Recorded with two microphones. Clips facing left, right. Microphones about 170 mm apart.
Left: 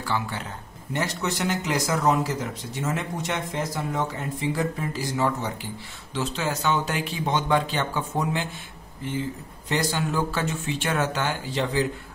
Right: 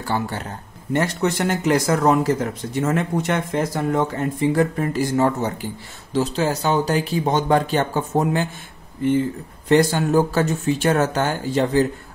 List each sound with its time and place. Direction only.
0.0 s a man's voice: 45° right (ahead or behind)
9.7 s speech: 55° right (ahead or behind)